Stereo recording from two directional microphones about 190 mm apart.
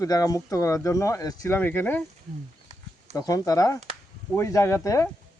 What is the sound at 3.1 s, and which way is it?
Speech, 15° left (ahead or behind).